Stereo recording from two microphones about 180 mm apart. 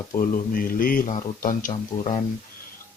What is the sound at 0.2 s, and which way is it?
Speech, 50° left (ahead or behind).